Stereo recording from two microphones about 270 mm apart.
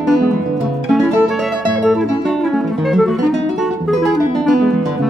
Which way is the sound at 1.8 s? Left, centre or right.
Centre.